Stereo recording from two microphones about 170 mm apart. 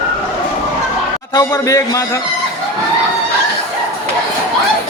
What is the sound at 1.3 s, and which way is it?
Speech, 20° left (ahead or behind).